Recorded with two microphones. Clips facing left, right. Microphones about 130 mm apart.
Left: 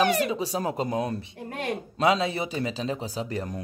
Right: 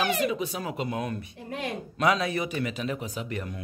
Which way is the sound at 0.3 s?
35° left (ahead or behind).